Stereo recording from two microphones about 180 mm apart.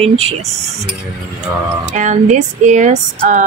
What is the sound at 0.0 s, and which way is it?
Speech, 35° right (ahead or behind).